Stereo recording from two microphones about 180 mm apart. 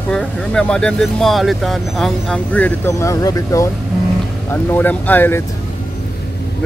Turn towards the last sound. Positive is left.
turn(degrees=10)  # may be behind; listen again after turning